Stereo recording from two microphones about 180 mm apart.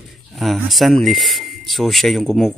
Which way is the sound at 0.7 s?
Centre (ahead or behind).